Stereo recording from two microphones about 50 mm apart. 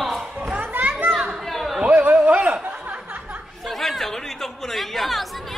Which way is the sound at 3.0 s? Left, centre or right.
Right.